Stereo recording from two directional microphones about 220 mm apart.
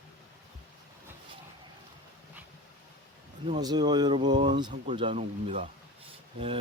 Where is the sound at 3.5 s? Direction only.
20° right (ahead or behind).